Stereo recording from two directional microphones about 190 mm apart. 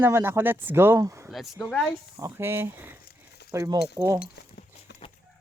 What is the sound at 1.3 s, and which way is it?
Speech, centre (ahead or behind).